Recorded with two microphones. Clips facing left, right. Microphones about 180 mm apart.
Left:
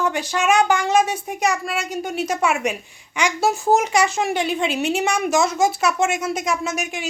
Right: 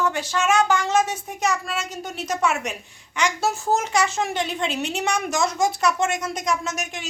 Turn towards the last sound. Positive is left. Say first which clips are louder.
# left 3 dB
turn(degrees=10)  # may be behind; listen again after turning